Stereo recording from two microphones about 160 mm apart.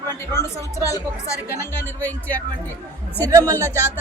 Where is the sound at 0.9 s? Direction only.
15° left (ahead or behind).